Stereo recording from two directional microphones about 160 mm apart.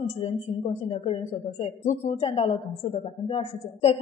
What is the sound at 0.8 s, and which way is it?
A woman's voice, 35° left (ahead or behind).